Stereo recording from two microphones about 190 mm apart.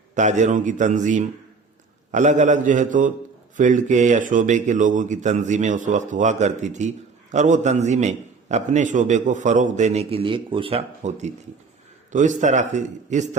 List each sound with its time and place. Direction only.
0.1 s speech: 40° right (ahead or behind)